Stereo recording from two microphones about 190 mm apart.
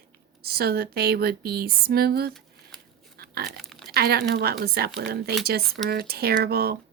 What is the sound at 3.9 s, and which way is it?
Speech, 55° right (ahead or behind).